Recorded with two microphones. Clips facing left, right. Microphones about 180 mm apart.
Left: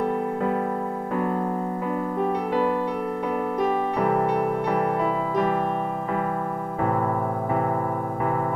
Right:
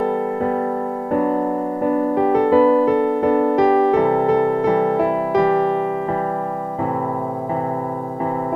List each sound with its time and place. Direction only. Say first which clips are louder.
2.1 s music: right 10 dB; 90° right